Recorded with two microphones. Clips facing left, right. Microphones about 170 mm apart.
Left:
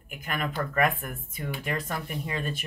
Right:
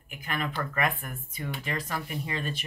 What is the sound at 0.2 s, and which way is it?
Speech, 45° left (ahead or behind).